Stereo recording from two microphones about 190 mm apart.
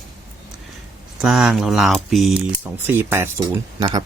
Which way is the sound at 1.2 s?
Centre (ahead or behind).